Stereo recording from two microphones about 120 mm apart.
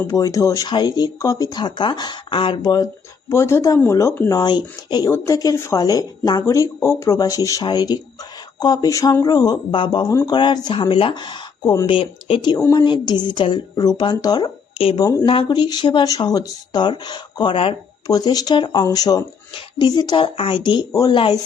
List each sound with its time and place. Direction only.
0.1 s speech: 30° left (ahead or behind)
3.2 s speech: 25° left (ahead or behind)
4.3 s speech: 35° left (ahead or behind)
10.1 s speech: 25° left (ahead or behind)
10.3 s speech: 35° left (ahead or behind)
11.9 s speech: 45° left (ahead or behind)
15.3 s speech: 45° left (ahead or behind)
18.1 s speech: 30° left (ahead or behind)